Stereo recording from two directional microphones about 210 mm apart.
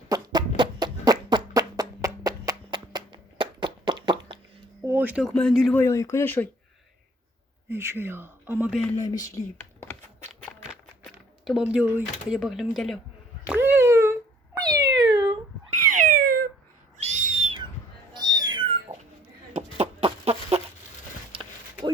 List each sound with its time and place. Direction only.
0.1 s a sound: 20° right (ahead or behind)
4.8 s speech: 10° right (ahead or behind)
5.8 s speech: 15° left (ahead or behind)
7.7 s speech: 10° right (ahead or behind)
9.0 s speech: 15° left (ahead or behind)
11.0 s speech: centre (ahead or behind)
13.5 s cat: 10° right (ahead or behind)
15.8 s cat: 40° right (ahead or behind)
17.0 s owl: 35° right (ahead or behind)
19.5 s chicken: 30° right (ahead or behind)
21.3 s a sound: 25° right (ahead or behind)